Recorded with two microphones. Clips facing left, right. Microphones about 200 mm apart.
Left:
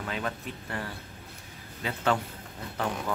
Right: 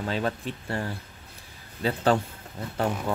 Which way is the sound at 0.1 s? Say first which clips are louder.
Right 5 dB; 30° right (ahead or behind).